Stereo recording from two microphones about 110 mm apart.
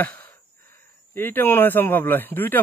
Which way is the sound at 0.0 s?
15° left (ahead or behind).